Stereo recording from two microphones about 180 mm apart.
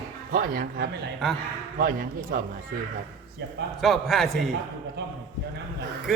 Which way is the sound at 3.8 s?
Centre (ahead or behind).